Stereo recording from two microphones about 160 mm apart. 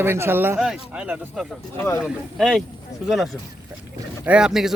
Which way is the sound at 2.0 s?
Centre (ahead or behind).